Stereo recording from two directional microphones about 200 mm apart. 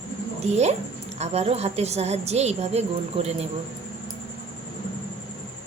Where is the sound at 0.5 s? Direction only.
35° right (ahead or behind).